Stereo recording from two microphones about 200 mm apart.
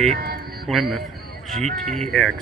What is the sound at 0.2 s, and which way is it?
Music, 50° right (ahead or behind).